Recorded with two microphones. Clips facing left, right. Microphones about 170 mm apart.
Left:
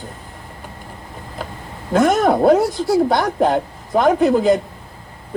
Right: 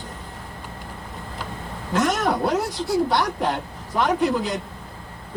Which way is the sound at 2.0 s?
50° left (ahead or behind).